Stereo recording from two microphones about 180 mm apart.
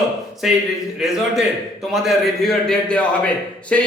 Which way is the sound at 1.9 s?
Centre (ahead or behind).